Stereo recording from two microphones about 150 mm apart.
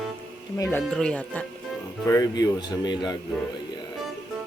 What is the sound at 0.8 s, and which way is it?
Speech, 5° left (ahead or behind).